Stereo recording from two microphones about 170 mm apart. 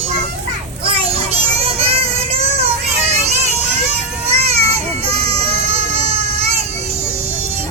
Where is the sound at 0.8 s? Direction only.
35° right (ahead or behind).